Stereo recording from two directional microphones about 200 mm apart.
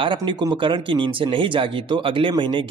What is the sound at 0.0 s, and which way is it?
Speech, 25° right (ahead or behind).